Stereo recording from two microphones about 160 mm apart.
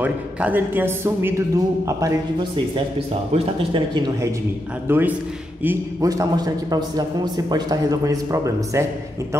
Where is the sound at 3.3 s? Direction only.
35° right (ahead or behind).